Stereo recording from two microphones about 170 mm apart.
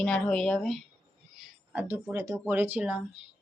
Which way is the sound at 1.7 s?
10° right (ahead or behind).